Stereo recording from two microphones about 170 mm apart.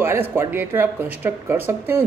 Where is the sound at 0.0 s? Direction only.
15° right (ahead or behind).